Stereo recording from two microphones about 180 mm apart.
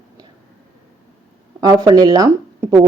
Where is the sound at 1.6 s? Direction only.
20° right (ahead or behind).